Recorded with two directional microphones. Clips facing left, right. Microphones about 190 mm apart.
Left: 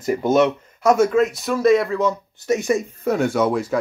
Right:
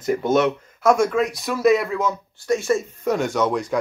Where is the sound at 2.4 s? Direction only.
20° left (ahead or behind).